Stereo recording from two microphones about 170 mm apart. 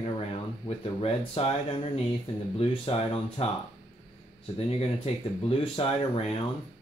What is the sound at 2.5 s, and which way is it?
Speech, 35° left (ahead or behind).